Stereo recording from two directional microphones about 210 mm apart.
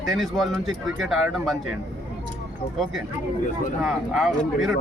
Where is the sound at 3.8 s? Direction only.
Centre (ahead or behind).